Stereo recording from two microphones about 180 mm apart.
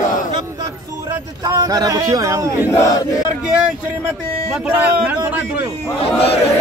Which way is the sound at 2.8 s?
20° left (ahead or behind).